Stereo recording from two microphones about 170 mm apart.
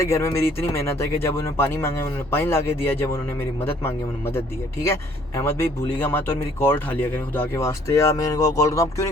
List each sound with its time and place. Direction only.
0.0 s speech: 15° left (ahead or behind)